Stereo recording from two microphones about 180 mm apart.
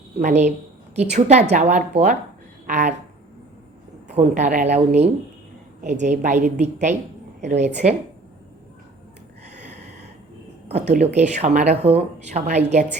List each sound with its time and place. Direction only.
0.2 s speech: 40° right (ahead or behind)
4.1 s speech: 40° right (ahead or behind)
9.5 s a sound: 40° right (ahead or behind)
10.7 s speech: 40° right (ahead or behind)